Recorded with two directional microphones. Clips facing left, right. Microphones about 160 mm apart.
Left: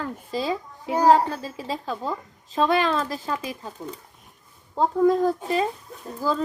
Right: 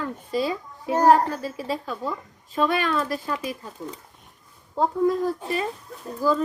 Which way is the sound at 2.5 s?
30° left (ahead or behind).